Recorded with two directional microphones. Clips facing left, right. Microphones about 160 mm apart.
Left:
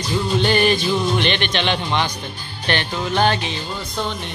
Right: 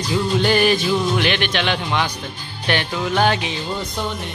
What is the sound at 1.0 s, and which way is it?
Speech, 5° right (ahead or behind).